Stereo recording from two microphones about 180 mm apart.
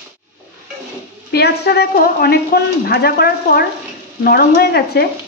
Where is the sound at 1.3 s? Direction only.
65° left (ahead or behind).